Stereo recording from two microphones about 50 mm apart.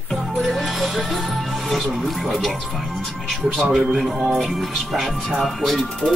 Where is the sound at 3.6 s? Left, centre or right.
Centre.